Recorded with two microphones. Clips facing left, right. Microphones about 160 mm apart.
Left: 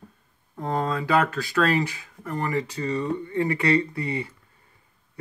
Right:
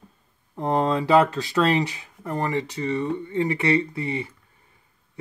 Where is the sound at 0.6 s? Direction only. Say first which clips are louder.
Right 4 dB; 30° right (ahead or behind).